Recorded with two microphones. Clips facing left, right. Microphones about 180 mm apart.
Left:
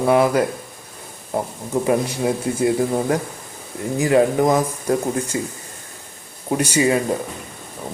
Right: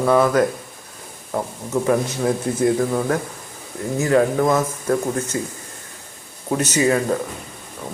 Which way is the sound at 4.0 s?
15° left (ahead or behind).